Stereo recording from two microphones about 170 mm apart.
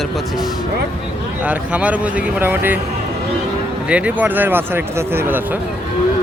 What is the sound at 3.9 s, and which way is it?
Speech, 10° right (ahead or behind).